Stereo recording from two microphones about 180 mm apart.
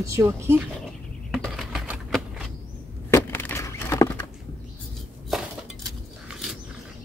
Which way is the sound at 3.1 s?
10° left (ahead or behind).